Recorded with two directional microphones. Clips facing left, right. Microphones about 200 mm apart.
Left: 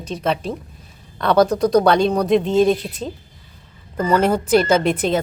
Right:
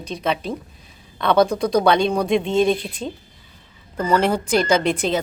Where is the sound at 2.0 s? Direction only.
40° left (ahead or behind).